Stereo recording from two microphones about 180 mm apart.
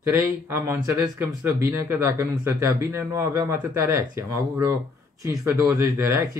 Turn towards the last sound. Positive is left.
turn(degrees=-15)  # may be behind; listen again after turning